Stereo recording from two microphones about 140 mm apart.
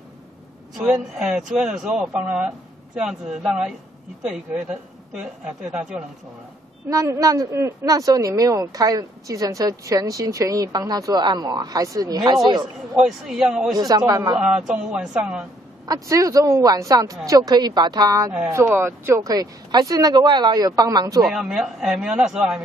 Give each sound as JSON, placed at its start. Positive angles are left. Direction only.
{"t": 0.7, "sound": "a woman's voice", "side_deg": -5}
{"t": 6.9, "sound": "speech", "side_deg": -25}
{"t": 12.9, "sound": "a woman's voice", "side_deg": 0}
{"t": 13.7, "sound": "speech", "side_deg": -25}
{"t": 14.4, "sound": "a woman's voice", "side_deg": -5}
{"t": 15.9, "sound": "speech", "side_deg": -25}
{"t": 21.2, "sound": "a woman's voice", "side_deg": 0}